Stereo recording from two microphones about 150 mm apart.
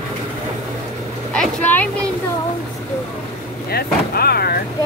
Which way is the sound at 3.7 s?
90° left.